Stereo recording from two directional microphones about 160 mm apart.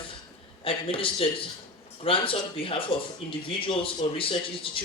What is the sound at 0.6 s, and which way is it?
Speech, 35° left (ahead or behind).